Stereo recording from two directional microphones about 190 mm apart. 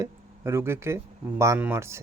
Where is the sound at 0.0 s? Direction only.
15° right (ahead or behind).